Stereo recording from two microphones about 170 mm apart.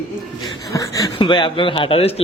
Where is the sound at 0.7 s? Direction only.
20° left (ahead or behind); by 2.2 s 35° left (ahead or behind).